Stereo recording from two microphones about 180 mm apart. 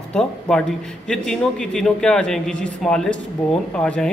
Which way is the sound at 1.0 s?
5° left (ahead or behind).